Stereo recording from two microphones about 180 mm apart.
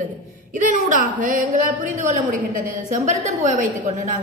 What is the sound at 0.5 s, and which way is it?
A woman's voice, 45° right (ahead or behind).